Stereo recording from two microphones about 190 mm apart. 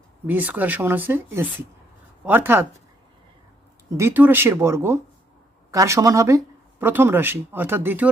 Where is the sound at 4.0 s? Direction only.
10° right (ahead or behind).